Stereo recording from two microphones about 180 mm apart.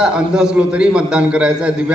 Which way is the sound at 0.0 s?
5° right (ahead or behind).